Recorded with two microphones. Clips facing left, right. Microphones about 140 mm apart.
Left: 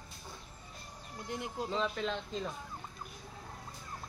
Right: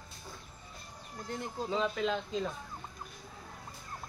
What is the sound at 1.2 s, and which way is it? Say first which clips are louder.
Speech: right 1 dB; 10° left (ahead or behind).